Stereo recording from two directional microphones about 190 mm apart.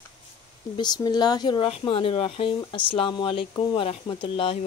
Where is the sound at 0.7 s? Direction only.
20° left (ahead or behind).